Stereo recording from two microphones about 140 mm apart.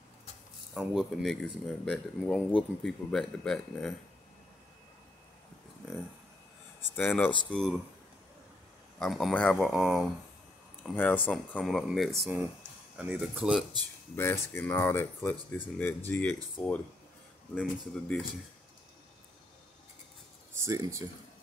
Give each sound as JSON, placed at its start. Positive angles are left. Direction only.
{"t": 0.7, "sound": "speech", "side_deg": 0}
{"t": 7.0, "sound": "speech", "side_deg": 10}
{"t": 9.0, "sound": "speech", "side_deg": 0}
{"t": 10.8, "sound": "speech", "side_deg": 10}
{"t": 11.6, "sound": "speech", "side_deg": 0}
{"t": 14.1, "sound": "speech", "side_deg": 20}
{"t": 20.5, "sound": "speech", "side_deg": -20}